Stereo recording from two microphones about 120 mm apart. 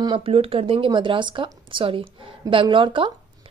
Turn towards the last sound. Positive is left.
turn(degrees=-45)  # may be behind; listen again after turning